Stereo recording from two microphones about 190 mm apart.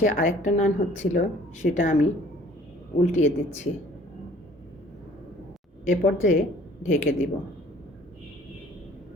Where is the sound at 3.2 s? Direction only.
40° left (ahead or behind).